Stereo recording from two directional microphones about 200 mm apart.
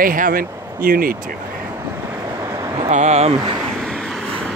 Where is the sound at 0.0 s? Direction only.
45° right (ahead or behind).